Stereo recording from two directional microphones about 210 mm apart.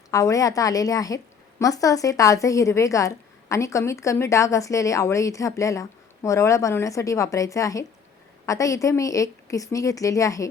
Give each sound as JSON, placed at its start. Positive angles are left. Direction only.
{"t": 0.1, "sound": "a woman's voice", "side_deg": 15}